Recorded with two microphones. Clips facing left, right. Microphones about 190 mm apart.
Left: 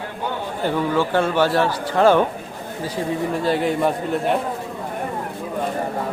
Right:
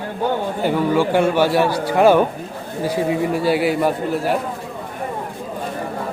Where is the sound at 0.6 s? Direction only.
10° right (ahead or behind).